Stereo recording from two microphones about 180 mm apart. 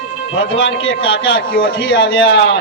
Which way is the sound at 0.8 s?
30° left (ahead or behind).